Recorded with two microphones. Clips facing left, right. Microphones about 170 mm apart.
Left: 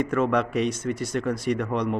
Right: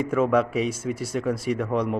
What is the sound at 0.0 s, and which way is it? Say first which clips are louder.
Speech: right 2 dB; 5° right (ahead or behind).